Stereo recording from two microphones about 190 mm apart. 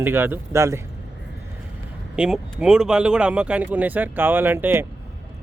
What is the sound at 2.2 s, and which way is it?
Speech, 5° right (ahead or behind).